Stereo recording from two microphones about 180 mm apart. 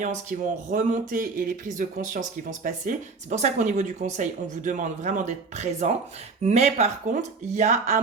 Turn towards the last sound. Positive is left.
turn(degrees=-40)  # may be behind; listen again after turning